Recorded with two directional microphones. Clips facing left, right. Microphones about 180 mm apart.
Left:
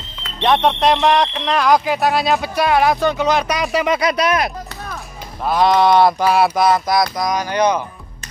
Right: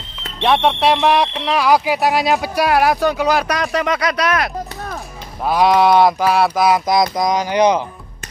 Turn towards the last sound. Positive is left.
turn(degrees=-20)  # may be behind; listen again after turning